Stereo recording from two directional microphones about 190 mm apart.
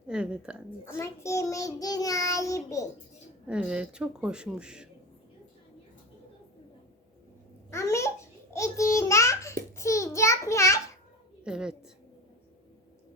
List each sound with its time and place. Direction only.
0.1 s a woman's voice: 5° right (ahead or behind)
0.9 s child singing: 15° left (ahead or behind)
3.4 s speech: 5° right (ahead or behind)
7.7 s babbling: 15° left (ahead or behind)
8.5 s a sound: 15° left (ahead or behind)
11.4 s speech: 5° right (ahead or behind)